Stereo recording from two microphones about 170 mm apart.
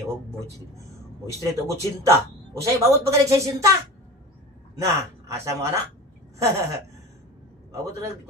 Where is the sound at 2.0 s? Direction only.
15° right (ahead or behind).